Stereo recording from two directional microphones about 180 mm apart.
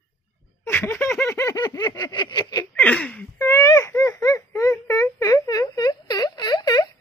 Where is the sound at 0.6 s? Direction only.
15° left (ahead or behind).